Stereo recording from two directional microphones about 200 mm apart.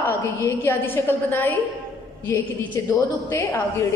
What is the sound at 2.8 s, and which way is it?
A woman's voice, 15° left (ahead or behind).